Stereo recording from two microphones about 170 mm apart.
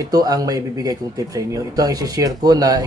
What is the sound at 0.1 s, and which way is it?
Speech, 20° right (ahead or behind).